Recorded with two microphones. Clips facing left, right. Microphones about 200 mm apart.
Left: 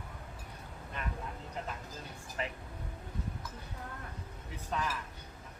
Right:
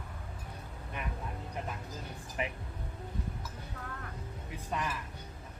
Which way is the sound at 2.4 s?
15° right (ahead or behind).